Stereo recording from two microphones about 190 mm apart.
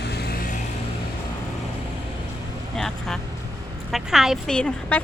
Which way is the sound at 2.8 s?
Centre (ahead or behind).